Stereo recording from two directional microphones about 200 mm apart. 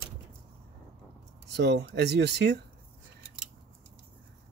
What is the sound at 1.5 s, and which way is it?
Speech, 55° right (ahead or behind).